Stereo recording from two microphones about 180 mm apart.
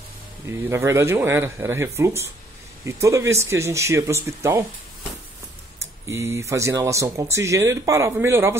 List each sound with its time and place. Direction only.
0.5 s speech: 15° right (ahead or behind)
6.0 s speech: 15° right (ahead or behind)